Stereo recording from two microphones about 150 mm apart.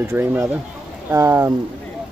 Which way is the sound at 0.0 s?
15° right (ahead or behind).